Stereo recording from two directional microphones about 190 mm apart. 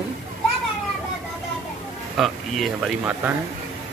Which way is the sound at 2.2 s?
Centre (ahead or behind).